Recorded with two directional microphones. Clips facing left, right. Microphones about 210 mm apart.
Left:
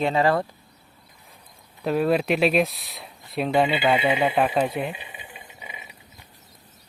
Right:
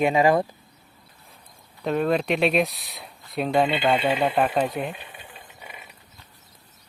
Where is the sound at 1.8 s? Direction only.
5° left (ahead or behind).